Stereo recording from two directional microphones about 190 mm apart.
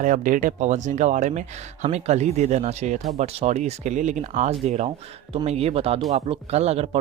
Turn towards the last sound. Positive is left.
turn(degrees=-35)  # may be behind; listen again after turning